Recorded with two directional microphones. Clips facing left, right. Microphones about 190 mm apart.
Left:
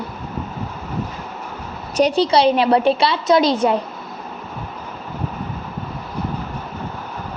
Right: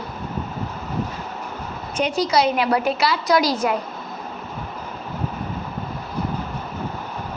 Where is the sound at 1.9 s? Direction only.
35° left (ahead or behind).